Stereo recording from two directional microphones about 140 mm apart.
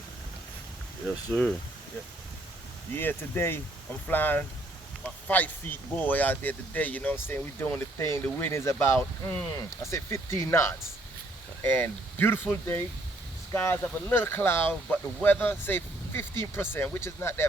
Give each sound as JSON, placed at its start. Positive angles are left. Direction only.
{"t": 1.3, "sound": "speech", "side_deg": 10}
{"t": 2.9, "sound": "speech", "side_deg": 15}